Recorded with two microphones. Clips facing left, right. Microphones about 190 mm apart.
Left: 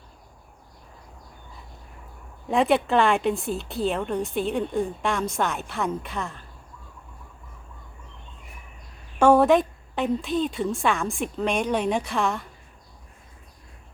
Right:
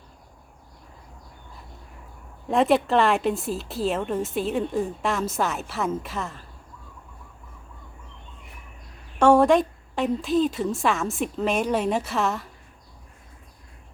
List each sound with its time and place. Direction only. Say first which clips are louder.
2.5 s speech: right 1 dB; centre (ahead or behind)
9.1 s speech: even; 5° left (ahead or behind)